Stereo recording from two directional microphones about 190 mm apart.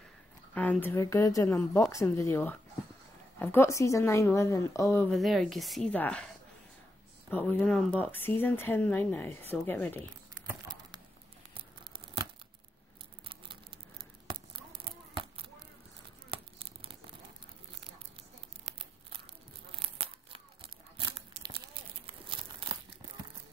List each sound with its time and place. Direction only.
0.6 s speech: 10° left (ahead or behind)
5.1 s a woman's voice: centre (ahead or behind)
14.3 s a sound: 25° right (ahead or behind)
16.3 s tearing: 30° right (ahead or behind)
18.7 s a sound: 30° right (ahead or behind)
19.7 s tearing: 30° right (ahead or behind)
22.0 s crumpling: 30° right (ahead or behind)